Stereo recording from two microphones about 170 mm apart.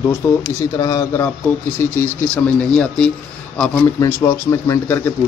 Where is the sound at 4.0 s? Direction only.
15° left (ahead or behind).